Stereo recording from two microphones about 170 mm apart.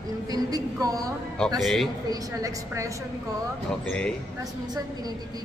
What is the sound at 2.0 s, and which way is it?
Speech, 20° right (ahead or behind).